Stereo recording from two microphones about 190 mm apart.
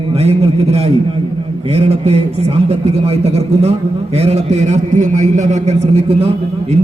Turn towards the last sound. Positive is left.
turn(degrees=-30)  # may be behind; listen again after turning